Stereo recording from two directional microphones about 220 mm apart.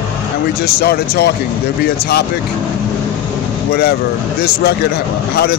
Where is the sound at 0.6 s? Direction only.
45° left (ahead or behind).